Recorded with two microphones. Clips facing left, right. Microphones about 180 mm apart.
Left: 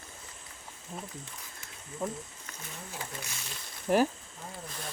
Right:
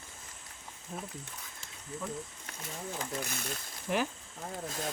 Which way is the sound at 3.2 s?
55° right (ahead or behind).